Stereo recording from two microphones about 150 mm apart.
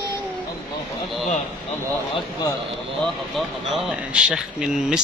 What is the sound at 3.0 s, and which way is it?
Speech, centre (ahead or behind).